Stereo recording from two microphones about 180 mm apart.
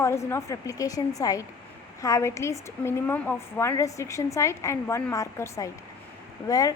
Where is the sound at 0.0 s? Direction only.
15° left (ahead or behind).